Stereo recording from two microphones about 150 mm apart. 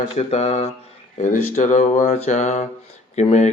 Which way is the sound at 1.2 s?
55° left (ahead or behind).